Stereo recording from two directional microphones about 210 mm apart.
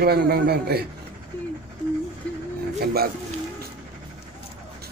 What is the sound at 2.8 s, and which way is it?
Speech, 45° right (ahead or behind).